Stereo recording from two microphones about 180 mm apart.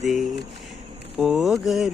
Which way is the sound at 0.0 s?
Centre (ahead or behind).